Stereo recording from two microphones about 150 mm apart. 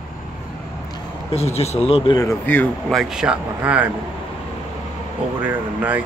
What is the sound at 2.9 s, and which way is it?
Speech, centre (ahead or behind).